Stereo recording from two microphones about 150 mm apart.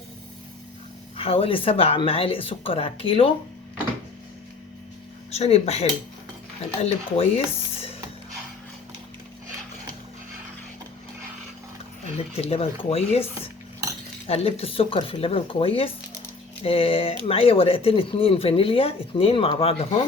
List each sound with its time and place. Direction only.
1.1 s speech: 40° left (ahead or behind)
5.3 s speech: 45° left (ahead or behind)
6.8 s speech: 40° left (ahead or behind)
12.1 s speech: 40° left (ahead or behind)
14.3 s speech: 40° left (ahead or behind)